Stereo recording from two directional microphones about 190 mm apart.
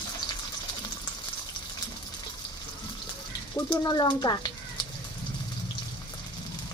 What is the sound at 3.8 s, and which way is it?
Speech, 20° left (ahead or behind).